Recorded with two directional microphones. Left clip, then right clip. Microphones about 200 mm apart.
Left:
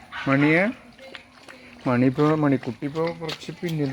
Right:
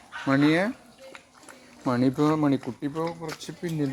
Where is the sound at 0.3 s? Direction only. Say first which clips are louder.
Left 3 dB; 25° left (ahead or behind).